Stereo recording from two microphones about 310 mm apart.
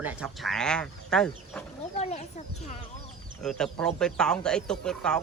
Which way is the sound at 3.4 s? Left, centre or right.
Centre.